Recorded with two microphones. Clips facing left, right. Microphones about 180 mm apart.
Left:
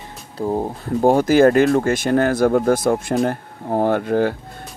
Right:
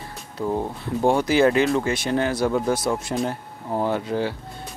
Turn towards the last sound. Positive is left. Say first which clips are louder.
# left 6 dB
turn(degrees=50)  # may be behind; listen again after turning